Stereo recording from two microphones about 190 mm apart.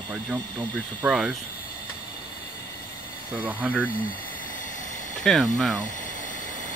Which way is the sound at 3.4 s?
5° right (ahead or behind).